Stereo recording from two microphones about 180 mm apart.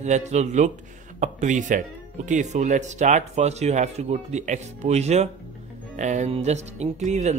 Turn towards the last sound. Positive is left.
turn(degrees=-40)  # may be behind; listen again after turning